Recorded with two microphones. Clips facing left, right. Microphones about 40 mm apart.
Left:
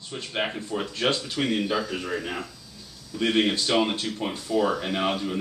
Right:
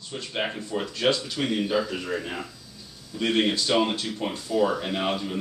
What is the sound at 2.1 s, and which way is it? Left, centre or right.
Speech, centre.